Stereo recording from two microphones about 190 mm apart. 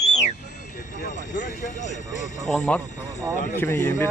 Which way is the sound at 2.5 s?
5° left (ahead or behind).